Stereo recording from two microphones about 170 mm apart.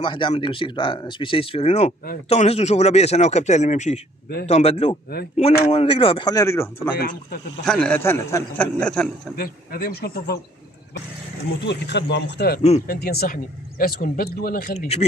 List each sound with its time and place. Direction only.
0.0 s speech: 30° left (ahead or behind)
7.0 s speech: 60° left (ahead or behind)
7.6 s a man's voice: 5° left (ahead or behind)
8.0 s a man's voice: 15° left (ahead or behind)
9.4 s speech: 65° left (ahead or behind)
11.6 s speech: 90° left; by 14.9 s 60° left (ahead or behind)